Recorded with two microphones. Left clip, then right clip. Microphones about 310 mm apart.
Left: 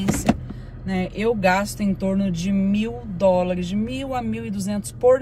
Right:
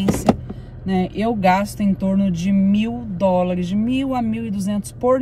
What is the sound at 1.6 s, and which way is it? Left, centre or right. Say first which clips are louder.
Speech: right 2 dB; centre.